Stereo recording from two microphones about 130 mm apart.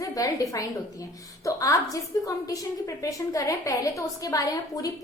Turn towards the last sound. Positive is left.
turn(degrees=25)  # may be behind; listen again after turning